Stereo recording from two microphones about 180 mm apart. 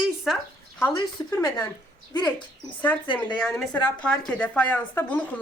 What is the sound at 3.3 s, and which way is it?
Speech, 5° left (ahead or behind).